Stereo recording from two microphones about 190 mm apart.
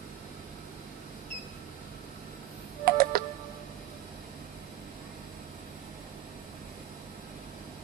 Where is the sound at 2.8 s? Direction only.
50° right (ahead or behind).